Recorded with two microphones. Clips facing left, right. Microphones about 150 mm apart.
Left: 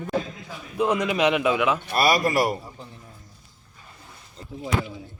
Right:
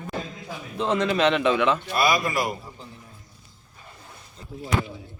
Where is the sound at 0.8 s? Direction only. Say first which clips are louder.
Even; 15° left (ahead or behind).